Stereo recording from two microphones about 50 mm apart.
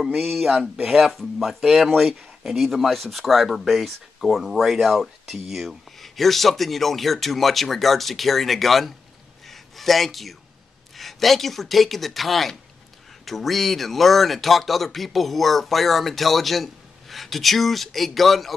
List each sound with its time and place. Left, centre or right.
0.0 s speech: centre
9.5 s a sound: centre
11.0 s speech: centre